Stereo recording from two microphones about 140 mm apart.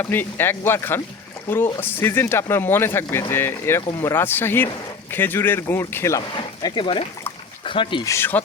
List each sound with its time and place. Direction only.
0.0 s speech: 15° left (ahead or behind); by 8.0 s 35° left (ahead or behind)
8.0 s speech: 20° left (ahead or behind)